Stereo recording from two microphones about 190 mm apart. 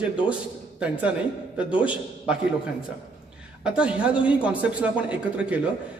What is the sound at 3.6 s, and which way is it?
A man's voice, 5° right (ahead or behind).